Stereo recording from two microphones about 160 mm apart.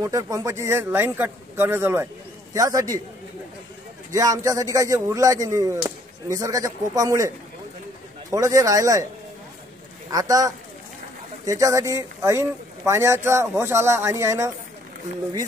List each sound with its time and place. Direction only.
0.0 s a man's voice: 20° right (ahead or behind)
4.1 s speech: 20° right (ahead or behind)
10.1 s a man's voice: 20° right (ahead or behind)